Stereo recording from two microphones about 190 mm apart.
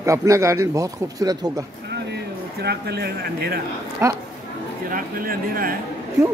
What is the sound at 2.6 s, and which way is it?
Speech, 60° right (ahead or behind).